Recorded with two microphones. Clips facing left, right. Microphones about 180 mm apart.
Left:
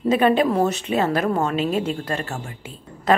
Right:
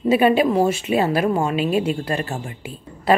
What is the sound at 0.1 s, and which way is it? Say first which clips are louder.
A woman's voice: right 2 dB; 5° right (ahead or behind).